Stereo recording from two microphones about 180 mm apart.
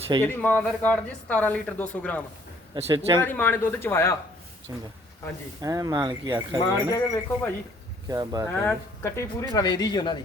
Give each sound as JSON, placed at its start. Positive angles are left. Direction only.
{"t": 0.2, "sound": "speech", "side_deg": 10}
{"t": 2.7, "sound": "a man's voice", "side_deg": -35}
{"t": 3.2, "sound": "speech", "side_deg": 10}
{"t": 5.6, "sound": "speech", "side_deg": -20}
{"t": 6.7, "sound": "speech", "side_deg": 15}
{"t": 8.0, "sound": "speech", "side_deg": -20}
{"t": 8.5, "sound": "speech", "side_deg": 15}